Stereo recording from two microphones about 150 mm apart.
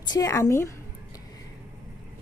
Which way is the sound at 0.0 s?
25° left (ahead or behind).